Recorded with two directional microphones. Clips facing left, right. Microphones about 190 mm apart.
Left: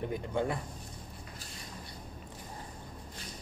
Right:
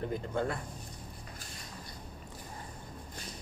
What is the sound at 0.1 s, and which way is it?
Speech, 15° left (ahead or behind).